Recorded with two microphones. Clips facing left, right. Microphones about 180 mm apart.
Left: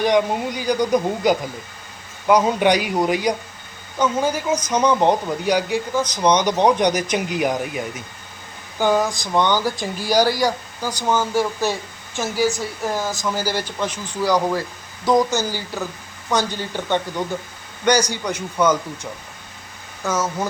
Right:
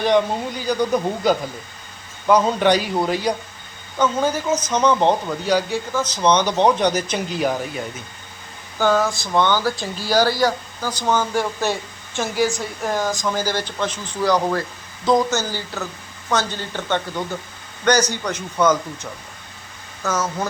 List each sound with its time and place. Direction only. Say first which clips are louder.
0.0 s speech: even; 10° left (ahead or behind)
12.5 s a woman's voice: left 2 dB; 15° right (ahead or behind)
13.2 s speech: right 1 dB; 10° left (ahead or behind)
20.1 s speech: left 1 dB; 10° left (ahead or behind)